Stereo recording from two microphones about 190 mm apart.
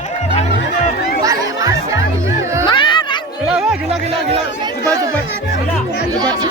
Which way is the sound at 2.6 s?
25° left (ahead or behind).